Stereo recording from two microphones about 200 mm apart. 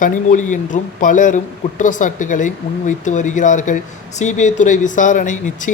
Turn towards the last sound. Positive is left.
turn(degrees=40)  # may be behind; listen again after turning